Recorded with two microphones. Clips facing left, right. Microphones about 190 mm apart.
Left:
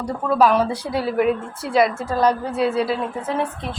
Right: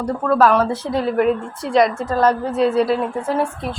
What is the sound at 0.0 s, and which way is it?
A woman's voice, 15° left (ahead or behind).